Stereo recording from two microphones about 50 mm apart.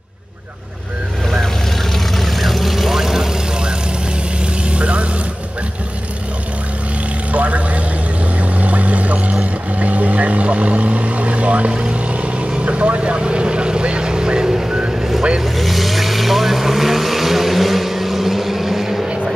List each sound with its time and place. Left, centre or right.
2.1 s vehicle: centre
4.6 s vehicle: right
7.3 s vehicle: right; by 19.0 s centre